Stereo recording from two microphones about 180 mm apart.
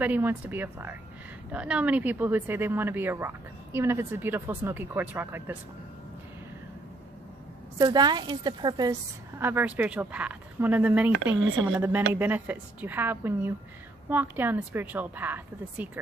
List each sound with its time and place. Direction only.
0.0 s speech: 10° right (ahead or behind)
7.8 s speech: 20° right (ahead or behind)
9.4 s speech: 10° right (ahead or behind)